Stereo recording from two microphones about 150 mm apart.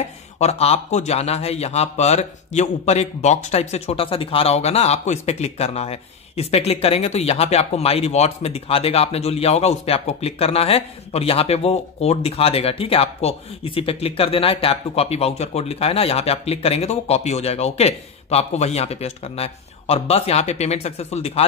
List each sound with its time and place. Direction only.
0.4 s speech: 45° left (ahead or behind)